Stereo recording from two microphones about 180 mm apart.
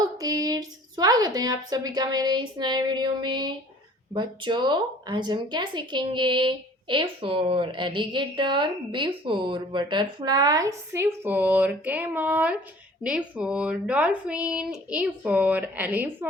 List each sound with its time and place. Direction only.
0.2 s speech: 20° right (ahead or behind)